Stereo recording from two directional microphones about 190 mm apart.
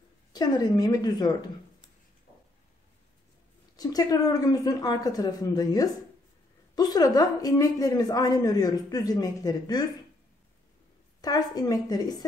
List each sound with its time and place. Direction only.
0.3 s a woman's voice: 20° left (ahead or behind)
3.7 s a woman's voice: 20° left (ahead or behind)
11.1 s a woman's voice: 20° left (ahead or behind)